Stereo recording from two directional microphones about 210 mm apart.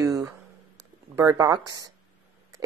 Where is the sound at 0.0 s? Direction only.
15° right (ahead or behind).